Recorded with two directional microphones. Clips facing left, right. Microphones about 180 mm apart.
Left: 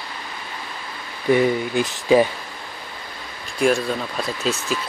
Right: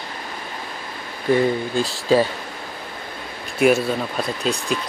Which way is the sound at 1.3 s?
15° left (ahead or behind).